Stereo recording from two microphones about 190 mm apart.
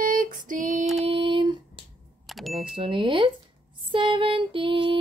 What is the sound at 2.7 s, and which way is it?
Female singing, 30° right (ahead or behind).